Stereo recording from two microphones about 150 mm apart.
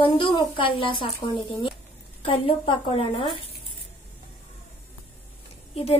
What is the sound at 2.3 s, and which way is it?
Speech, 40° left (ahead or behind).